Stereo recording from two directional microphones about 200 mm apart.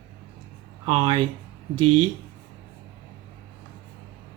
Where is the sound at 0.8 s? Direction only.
25° right (ahead or behind).